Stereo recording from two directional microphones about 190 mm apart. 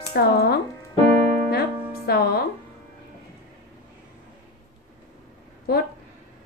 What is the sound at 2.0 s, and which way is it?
Speech, 55° left (ahead or behind).